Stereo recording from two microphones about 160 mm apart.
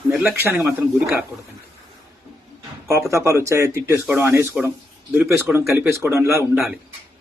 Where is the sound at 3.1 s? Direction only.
20° right (ahead or behind).